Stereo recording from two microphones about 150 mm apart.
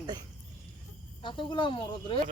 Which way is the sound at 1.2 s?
30° left (ahead or behind).